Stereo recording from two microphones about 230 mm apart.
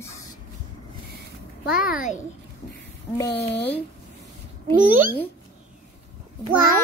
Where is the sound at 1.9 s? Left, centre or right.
Left.